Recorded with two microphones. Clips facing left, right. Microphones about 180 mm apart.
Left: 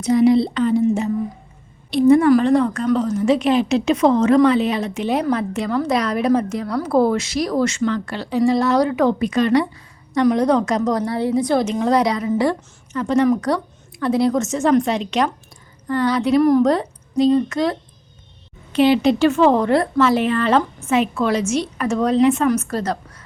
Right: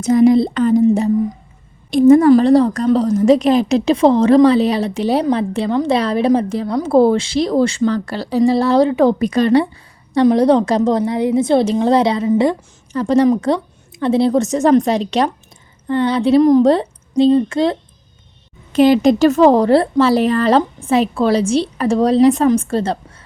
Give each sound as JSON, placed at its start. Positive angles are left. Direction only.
{"t": 0.0, "sound": "a woman's voice", "side_deg": -45}
{"t": 9.1, "sound": "a woman's voice", "side_deg": -35}
{"t": 18.7, "sound": "a woman's voice", "side_deg": -45}